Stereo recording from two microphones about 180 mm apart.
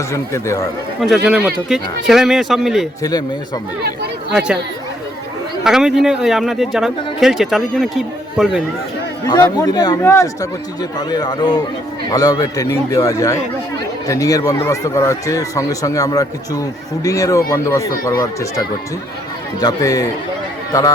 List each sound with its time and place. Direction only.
0.1 s speech: 15° left (ahead or behind)
1.0 s speech: centre (ahead or behind)
3.0 s speech: 20° left (ahead or behind)
4.3 s speech: 5° right (ahead or behind)
5.6 s speech: 5° right (ahead or behind)
9.2 s speech: 20° left (ahead or behind)